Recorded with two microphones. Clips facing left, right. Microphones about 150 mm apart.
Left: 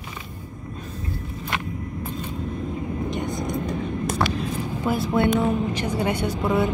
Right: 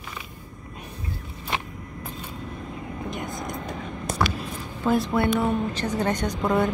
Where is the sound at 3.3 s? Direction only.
50° right (ahead or behind).